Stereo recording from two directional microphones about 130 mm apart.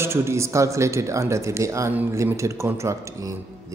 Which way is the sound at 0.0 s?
20° right (ahead or behind).